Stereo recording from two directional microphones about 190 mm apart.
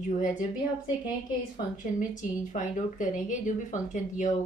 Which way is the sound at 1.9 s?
40° left (ahead or behind).